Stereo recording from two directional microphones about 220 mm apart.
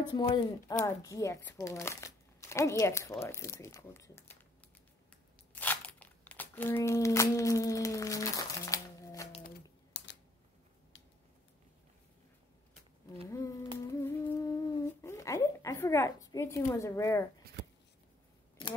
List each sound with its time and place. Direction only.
0.1 s speech: 20° left (ahead or behind)
5.5 s crumpling: 5° left (ahead or behind)
9.9 s camera: 55° left (ahead or behind)
13.7 s humming: 10° left (ahead or behind)